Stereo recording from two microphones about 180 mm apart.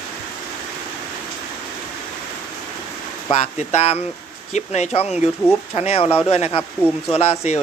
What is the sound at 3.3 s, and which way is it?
Speech, 35° left (ahead or behind).